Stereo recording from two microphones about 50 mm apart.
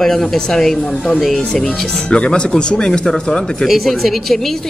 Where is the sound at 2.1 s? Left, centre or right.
Centre.